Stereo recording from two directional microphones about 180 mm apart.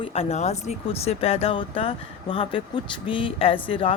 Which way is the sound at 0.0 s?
35° left (ahead or behind).